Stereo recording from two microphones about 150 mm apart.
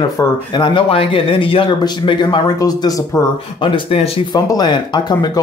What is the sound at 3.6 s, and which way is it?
Speech, 35° left (ahead or behind).